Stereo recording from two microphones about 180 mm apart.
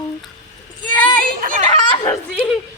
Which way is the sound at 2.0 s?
15° left (ahead or behind).